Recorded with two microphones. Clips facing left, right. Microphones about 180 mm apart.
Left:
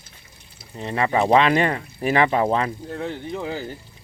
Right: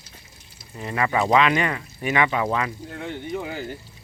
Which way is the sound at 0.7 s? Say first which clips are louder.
Left 2 dB; 30° left (ahead or behind).